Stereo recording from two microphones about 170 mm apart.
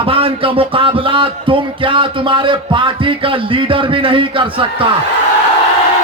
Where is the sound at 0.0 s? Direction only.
30° right (ahead or behind).